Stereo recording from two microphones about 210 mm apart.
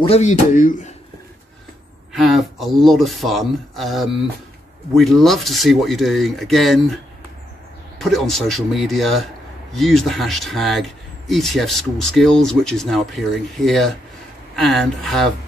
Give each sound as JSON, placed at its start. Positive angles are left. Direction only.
{"t": 0.1, "sound": "speech", "side_deg": 35}
{"t": 2.1, "sound": "speech", "side_deg": 0}
{"t": 8.0, "sound": "speech", "side_deg": 0}